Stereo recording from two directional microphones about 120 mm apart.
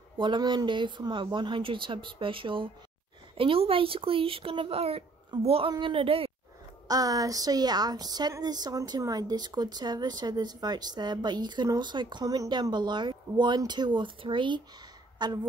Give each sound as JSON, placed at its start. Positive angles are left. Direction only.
{"t": 0.2, "sound": "speech", "side_deg": -40}
{"t": 6.9, "sound": "a woman's voice", "side_deg": -30}